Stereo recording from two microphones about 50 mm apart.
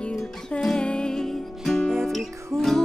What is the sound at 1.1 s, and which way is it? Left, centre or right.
Music, centre.